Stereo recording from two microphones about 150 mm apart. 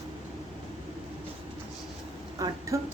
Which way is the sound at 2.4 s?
25° right (ahead or behind).